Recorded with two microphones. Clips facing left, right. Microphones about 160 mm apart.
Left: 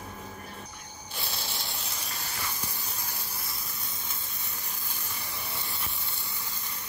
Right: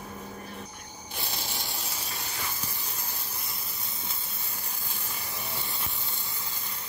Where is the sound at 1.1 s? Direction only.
15° right (ahead or behind).